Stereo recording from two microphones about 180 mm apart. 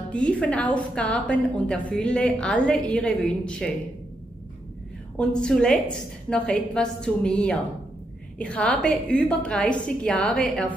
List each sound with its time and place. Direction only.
0.1 s a woman's voice: 5° left (ahead or behind)
5.1 s a woman's voice: 5° left (ahead or behind)